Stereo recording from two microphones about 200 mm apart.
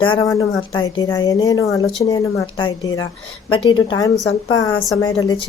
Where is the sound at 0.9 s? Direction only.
20° left (ahead or behind).